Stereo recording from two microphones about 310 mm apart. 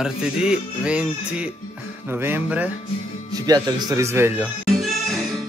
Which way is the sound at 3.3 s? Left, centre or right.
Centre.